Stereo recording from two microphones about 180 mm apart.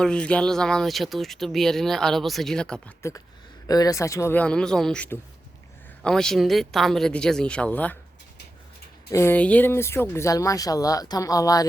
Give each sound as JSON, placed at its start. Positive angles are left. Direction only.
{"t": 0.0, "sound": "speech", "side_deg": 5}
{"t": 3.7, "sound": "speech", "side_deg": 20}
{"t": 9.0, "sound": "speech", "side_deg": 15}